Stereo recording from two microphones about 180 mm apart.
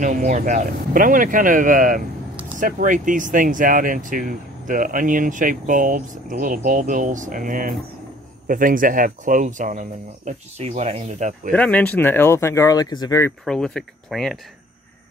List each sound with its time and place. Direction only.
0.0 s speech: 45° right (ahead or behind)
11.5 s speech: 5° left (ahead or behind)
13.5 s speech: centre (ahead or behind)